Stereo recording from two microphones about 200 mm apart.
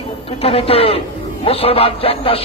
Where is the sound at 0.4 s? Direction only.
30° left (ahead or behind).